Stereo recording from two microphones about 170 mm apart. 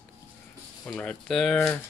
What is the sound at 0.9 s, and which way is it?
Speech, 5° left (ahead or behind).